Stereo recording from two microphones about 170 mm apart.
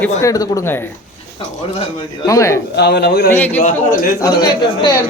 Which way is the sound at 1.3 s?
35° left (ahead or behind).